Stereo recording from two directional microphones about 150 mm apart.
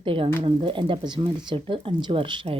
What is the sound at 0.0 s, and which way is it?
A woman's voice, 35° right (ahead or behind).